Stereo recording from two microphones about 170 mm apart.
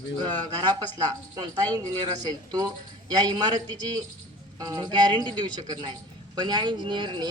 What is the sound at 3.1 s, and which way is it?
Speech, 25° right (ahead or behind).